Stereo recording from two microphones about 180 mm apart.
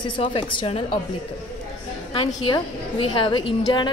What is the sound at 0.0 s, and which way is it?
Speech, 30° left (ahead or behind).